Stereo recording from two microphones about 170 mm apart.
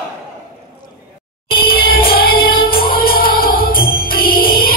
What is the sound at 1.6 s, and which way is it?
Music, 60° left (ahead or behind).